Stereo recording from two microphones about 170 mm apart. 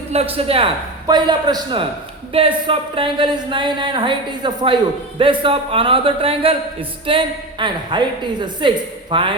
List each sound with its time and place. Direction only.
0.1 s a woman's voice: 35° right (ahead or behind)